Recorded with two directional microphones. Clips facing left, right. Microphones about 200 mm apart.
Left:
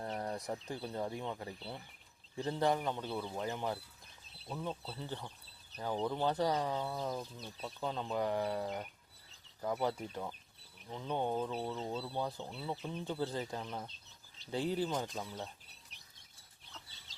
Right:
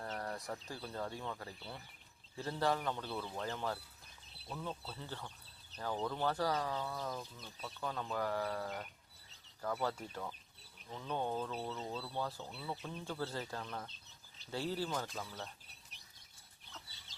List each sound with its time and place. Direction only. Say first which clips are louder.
0.0 s speech: left 3 dB; 20° left (ahead or behind)